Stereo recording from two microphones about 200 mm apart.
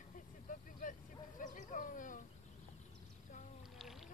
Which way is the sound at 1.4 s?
40° left (ahead or behind).